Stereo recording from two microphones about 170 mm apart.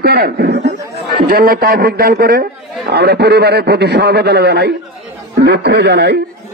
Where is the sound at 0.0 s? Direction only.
60° right (ahead or behind).